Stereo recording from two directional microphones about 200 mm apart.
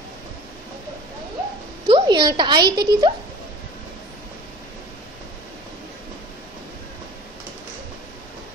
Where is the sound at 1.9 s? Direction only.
25° right (ahead or behind).